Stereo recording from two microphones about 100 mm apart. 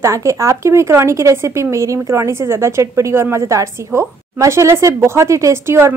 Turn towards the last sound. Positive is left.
turn(degrees=-25)  # may be behind; listen again after turning